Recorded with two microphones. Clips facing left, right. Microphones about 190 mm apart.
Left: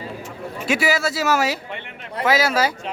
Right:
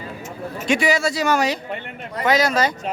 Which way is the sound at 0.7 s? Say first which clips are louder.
Right 2 dB; 5° left (ahead or behind).